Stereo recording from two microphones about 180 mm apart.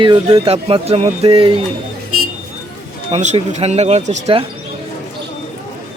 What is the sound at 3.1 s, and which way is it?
Speech, 40° right (ahead or behind).